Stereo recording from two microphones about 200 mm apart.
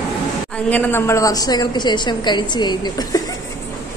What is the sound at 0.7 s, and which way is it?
A woman's voice, 10° left (ahead or behind).